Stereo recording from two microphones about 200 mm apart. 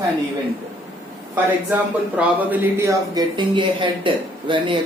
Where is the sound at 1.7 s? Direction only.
10° right (ahead or behind).